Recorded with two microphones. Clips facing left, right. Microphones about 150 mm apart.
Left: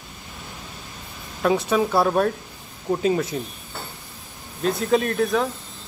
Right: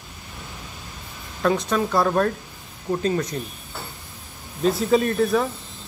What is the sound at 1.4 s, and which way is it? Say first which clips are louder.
Speech: left 1 dB; 5° left (ahead or behind).